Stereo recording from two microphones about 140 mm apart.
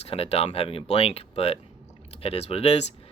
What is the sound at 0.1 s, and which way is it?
Speech, 45° left (ahead or behind).